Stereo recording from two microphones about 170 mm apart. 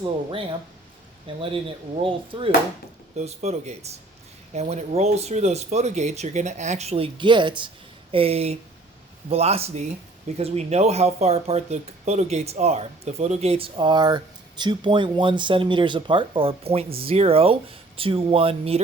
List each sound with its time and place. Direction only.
1.4 s speech: 30° right (ahead or behind)